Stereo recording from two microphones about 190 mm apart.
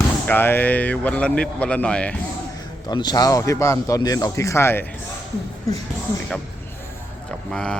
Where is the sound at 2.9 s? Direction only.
20° left (ahead or behind).